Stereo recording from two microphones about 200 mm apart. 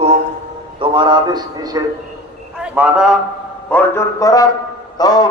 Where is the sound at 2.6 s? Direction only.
5° right (ahead or behind).